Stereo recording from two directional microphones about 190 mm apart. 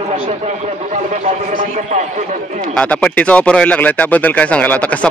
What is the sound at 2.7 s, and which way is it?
Speech, 5° left (ahead or behind).